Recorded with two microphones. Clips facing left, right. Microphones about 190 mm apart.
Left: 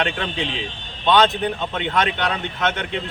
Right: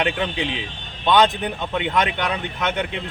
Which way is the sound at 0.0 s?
15° right (ahead or behind).